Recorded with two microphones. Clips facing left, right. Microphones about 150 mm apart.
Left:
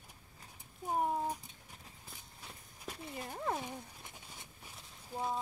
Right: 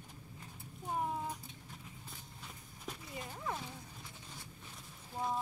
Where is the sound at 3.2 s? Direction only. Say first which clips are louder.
Left 5 dB; 50° left (ahead or behind).